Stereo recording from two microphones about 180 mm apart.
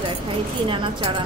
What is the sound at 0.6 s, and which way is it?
Speech, 30° right (ahead or behind).